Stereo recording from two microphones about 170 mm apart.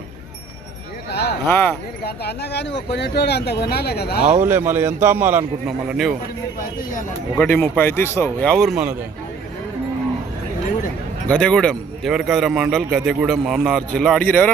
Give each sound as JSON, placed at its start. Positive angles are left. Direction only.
{"t": 1.5, "sound": "speech", "side_deg": 10}
{"t": 2.0, "sound": "speech", "side_deg": 75}
{"t": 4.2, "sound": "speech", "side_deg": -40}
{"t": 4.4, "sound": "a man's voice", "side_deg": -15}
{"t": 7.3, "sound": "speech", "side_deg": 15}
{"t": 11.3, "sound": "a man's voice", "side_deg": 5}